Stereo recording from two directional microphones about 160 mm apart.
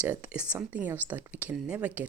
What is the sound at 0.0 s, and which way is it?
Speech, 10° right (ahead or behind).